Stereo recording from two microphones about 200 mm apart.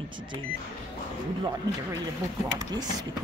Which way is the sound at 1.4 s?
20° right (ahead or behind).